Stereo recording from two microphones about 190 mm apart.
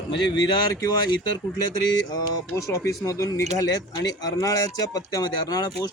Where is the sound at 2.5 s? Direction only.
15° left (ahead or behind).